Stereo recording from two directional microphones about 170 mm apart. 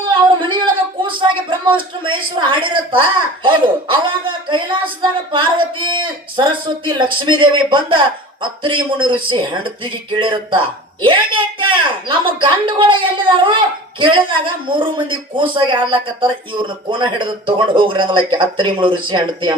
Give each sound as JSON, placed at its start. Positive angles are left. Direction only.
{"t": 0.1, "sound": "a woman's voice", "side_deg": -30}